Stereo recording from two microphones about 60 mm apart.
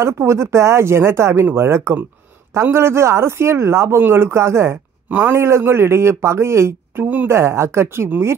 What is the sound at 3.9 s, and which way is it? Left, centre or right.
Speech, right.